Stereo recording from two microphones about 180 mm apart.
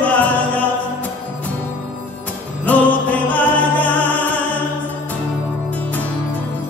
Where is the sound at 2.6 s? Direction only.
10° left (ahead or behind).